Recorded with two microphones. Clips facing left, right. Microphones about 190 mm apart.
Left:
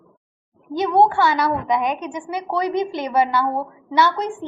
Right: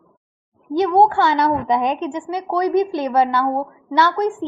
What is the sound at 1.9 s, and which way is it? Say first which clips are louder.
A woman's voice: right 3 dB; 15° left (ahead or behind).